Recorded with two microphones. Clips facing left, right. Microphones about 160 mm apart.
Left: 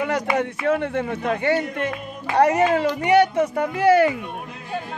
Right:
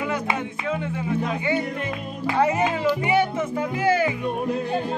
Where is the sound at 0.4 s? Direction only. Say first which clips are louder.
Left 6 dB; 70° left (ahead or behind).